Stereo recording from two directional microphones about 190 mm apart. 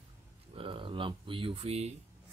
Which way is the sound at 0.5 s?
25° right (ahead or behind).